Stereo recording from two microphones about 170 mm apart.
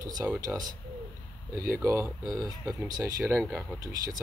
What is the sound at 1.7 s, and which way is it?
Speech, 15° right (ahead or behind).